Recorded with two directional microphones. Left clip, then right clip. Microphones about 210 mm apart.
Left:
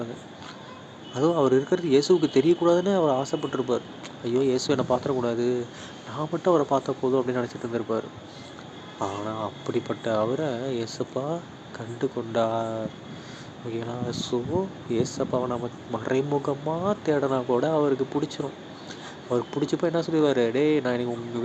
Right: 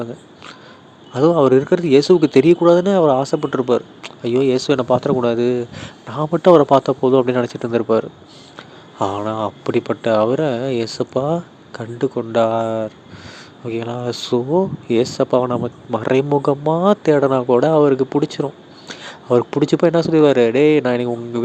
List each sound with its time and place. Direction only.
1.1 s speech: 30° right (ahead or behind)